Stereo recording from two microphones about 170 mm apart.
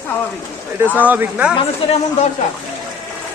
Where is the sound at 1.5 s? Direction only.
35° left (ahead or behind).